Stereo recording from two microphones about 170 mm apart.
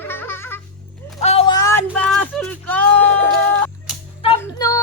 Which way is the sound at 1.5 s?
20° left (ahead or behind).